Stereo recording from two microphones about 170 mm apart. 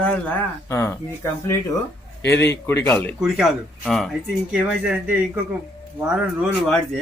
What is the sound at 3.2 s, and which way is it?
Speech, centre (ahead or behind).